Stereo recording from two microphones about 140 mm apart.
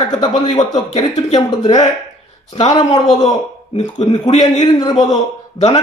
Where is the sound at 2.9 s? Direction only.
55° left (ahead or behind).